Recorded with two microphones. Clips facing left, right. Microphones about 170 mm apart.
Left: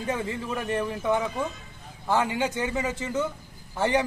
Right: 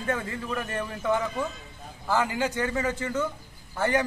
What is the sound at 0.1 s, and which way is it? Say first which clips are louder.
A man's voice: even; 15° left (ahead or behind).